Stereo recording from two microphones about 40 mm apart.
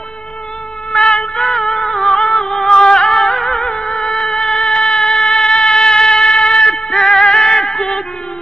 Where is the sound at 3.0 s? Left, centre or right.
Centre.